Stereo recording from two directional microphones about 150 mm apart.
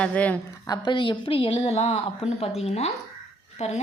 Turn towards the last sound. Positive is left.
turn(degrees=50)  # may be behind; listen again after turning